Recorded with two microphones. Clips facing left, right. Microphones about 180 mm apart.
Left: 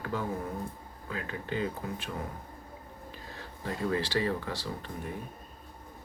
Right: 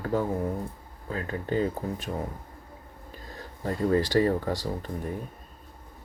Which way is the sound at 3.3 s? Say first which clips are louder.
Right 6 dB; 45° right (ahead or behind).